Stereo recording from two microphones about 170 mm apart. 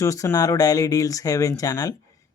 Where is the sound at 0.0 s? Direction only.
20° left (ahead or behind).